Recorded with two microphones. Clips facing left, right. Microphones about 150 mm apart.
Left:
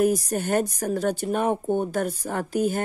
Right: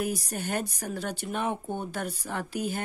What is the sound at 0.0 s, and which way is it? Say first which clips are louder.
Speech: left 9 dB; 45° left (ahead or behind).